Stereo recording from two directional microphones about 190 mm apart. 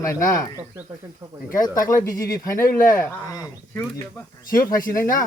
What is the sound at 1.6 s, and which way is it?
Speech, 20° left (ahead or behind).